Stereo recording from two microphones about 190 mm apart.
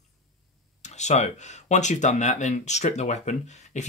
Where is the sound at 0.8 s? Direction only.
35° left (ahead or behind).